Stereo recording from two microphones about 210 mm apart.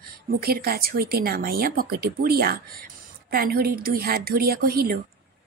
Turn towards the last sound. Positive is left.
turn(degrees=-45)  # may be behind; listen again after turning